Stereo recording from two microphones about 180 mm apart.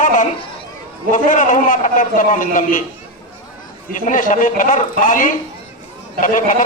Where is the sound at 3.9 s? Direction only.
45° left (ahead or behind).